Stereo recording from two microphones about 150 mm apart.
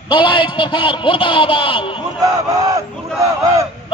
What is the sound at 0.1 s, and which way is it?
A man's voice, 35° left (ahead or behind).